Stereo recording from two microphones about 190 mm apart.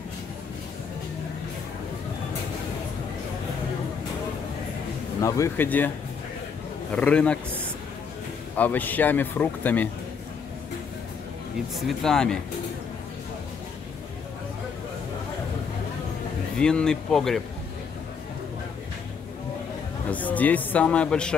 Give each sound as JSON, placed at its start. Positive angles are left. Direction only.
{"t": 5.2, "sound": "speech", "side_deg": 15}
{"t": 6.9, "sound": "speech", "side_deg": 5}
{"t": 11.7, "sound": "speech", "side_deg": 5}
{"t": 16.5, "sound": "speech", "side_deg": 5}
{"t": 20.1, "sound": "speech", "side_deg": 10}